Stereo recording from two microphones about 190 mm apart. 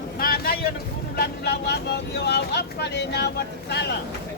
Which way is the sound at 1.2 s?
60° left (ahead or behind).